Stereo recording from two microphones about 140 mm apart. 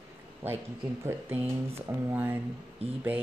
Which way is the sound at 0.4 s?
15° right (ahead or behind).